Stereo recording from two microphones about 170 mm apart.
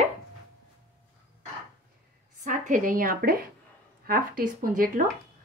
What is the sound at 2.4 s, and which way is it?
A woman's voice, 50° right (ahead or behind).